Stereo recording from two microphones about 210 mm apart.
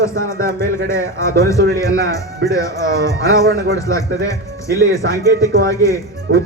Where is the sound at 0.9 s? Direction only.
15° left (ahead or behind).